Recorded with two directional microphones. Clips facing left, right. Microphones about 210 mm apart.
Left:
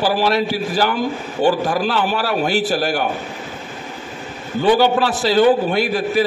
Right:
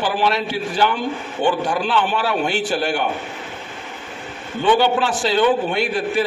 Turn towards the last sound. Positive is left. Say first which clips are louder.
# left 2 dB
turn(degrees=40)  # may be behind; listen again after turning